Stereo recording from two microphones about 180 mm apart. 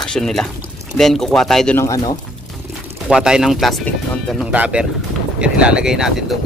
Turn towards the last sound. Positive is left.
turn(degrees=-5)  # may be behind; listen again after turning